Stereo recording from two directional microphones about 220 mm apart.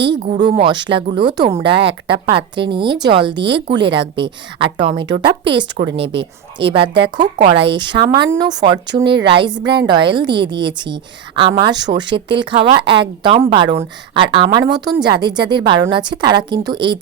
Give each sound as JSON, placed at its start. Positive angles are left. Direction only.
{"t": 0.2, "sound": "a woman's voice", "side_deg": -35}